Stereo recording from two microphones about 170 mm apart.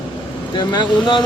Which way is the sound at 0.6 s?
25° left (ahead or behind).